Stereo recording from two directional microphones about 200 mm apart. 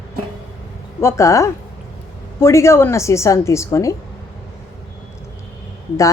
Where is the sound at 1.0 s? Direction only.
15° left (ahead or behind).